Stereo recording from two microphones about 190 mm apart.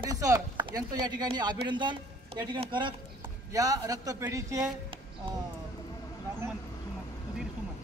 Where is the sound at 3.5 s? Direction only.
20° right (ahead or behind).